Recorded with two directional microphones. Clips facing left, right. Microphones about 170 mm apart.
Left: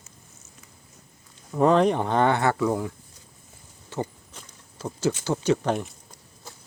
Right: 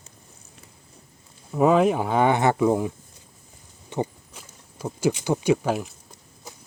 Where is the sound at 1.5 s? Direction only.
5° right (ahead or behind).